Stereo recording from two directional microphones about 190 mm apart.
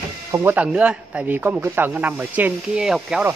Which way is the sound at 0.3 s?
10° right (ahead or behind).